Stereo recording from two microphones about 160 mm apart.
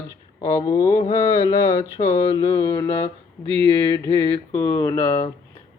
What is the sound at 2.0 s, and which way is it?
Speech, 45° left (ahead or behind).